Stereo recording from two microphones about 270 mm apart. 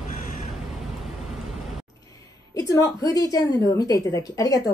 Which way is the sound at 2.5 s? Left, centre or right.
Centre.